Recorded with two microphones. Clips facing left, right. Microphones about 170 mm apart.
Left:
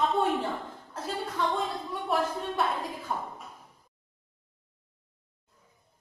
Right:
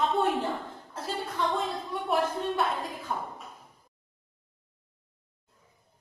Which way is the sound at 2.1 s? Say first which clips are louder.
Right 2 dB; centre (ahead or behind).